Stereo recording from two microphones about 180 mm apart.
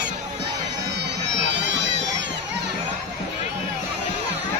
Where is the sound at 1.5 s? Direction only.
80° right.